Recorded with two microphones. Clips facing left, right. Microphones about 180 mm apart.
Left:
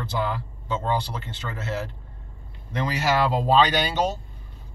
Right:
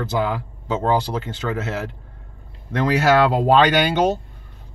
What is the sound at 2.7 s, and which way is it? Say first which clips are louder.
Speech: right 7 dB; 65° right (ahead or behind).